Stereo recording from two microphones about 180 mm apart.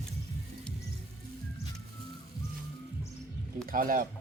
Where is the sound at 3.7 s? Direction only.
50° right (ahead or behind).